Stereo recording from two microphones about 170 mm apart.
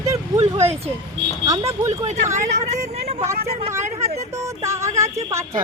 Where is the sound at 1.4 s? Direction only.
20° right (ahead or behind).